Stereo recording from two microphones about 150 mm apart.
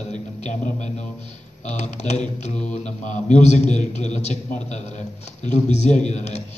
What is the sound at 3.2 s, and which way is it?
A man's voice, 50° left (ahead or behind).